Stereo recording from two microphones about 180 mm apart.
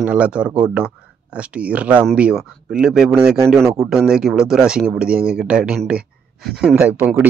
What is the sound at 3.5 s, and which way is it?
Speech, 15° right (ahead or behind).